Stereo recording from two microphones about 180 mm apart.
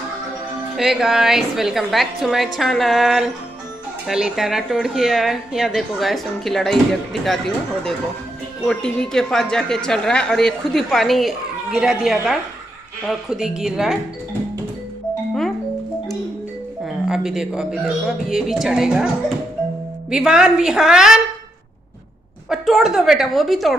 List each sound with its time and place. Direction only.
0.7 s a woman's voice: centre (ahead or behind)
16.8 s a woman's voice: 5° right (ahead or behind)
22.5 s a woman's voice: centre (ahead or behind)